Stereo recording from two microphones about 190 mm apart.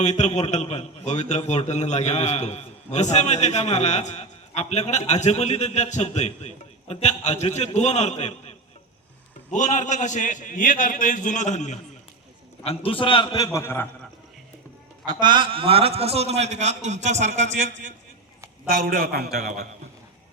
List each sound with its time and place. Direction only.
0.0 s a man's voice: 35° left (ahead or behind); by 13.8 s 15° left (ahead or behind)
15.0 s a man's voice: 25° right (ahead or behind)
18.7 s a man's voice: 50° right (ahead or behind)
19.4 s a man's voice: 40° right (ahead or behind)